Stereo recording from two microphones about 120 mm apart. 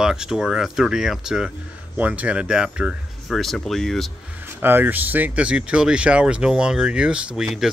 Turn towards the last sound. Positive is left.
turn(degrees=-5)  # may be behind; listen again after turning